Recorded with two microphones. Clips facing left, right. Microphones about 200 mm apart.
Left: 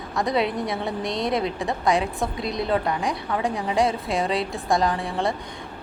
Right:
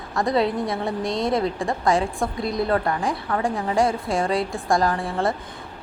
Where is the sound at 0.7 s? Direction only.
Centre (ahead or behind).